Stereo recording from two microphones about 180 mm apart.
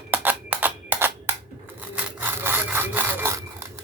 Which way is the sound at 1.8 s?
10° right (ahead or behind).